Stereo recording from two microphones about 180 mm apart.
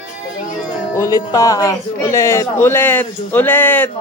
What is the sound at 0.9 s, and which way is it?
A man's voice, 20° left (ahead or behind).